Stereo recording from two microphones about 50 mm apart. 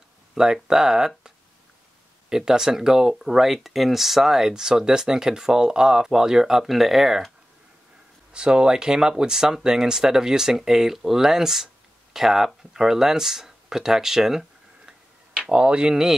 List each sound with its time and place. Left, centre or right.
0.3 s speech: centre
8.3 s speech: centre
14.9 s tick-tock: centre